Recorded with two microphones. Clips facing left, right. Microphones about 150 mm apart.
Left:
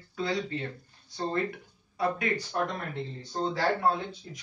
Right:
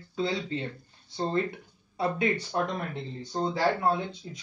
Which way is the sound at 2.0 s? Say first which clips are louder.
Right 2 dB; 25° right (ahead or behind).